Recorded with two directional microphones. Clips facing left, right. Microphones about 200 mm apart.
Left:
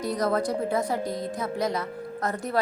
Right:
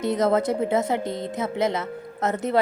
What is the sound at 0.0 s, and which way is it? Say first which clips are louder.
A woman's voice: right 4 dB; 25° right (ahead or behind).